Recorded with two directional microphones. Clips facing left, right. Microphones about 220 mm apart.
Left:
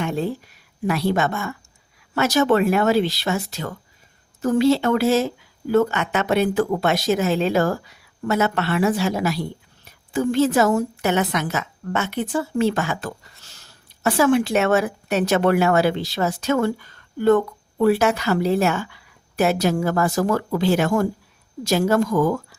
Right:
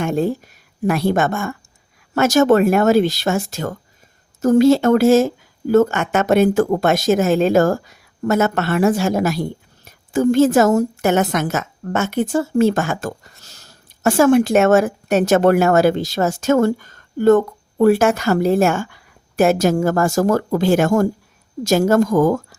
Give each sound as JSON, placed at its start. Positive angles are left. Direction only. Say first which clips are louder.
{"t": 0.0, "sound": "a woman's voice", "louder": "right 5 dB", "side_deg": -45}